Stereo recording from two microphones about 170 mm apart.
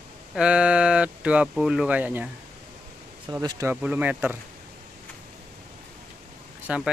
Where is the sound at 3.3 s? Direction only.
20° right (ahead or behind).